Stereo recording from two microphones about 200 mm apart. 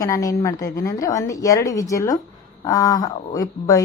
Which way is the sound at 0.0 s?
15° left (ahead or behind).